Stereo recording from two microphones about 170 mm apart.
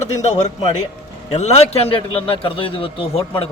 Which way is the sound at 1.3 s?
40° left (ahead or behind).